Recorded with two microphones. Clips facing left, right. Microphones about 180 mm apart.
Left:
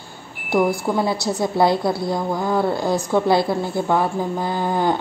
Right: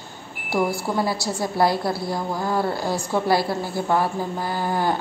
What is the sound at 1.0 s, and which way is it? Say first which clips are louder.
A woman's voice: left 3 dB; 20° left (ahead or behind).